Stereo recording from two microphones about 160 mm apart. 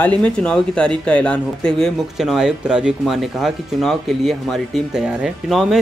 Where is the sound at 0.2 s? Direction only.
5° left (ahead or behind).